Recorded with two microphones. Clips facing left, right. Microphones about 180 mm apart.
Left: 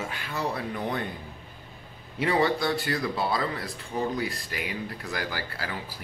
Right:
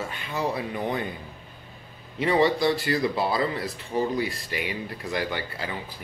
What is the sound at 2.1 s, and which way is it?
Speech, centre (ahead or behind).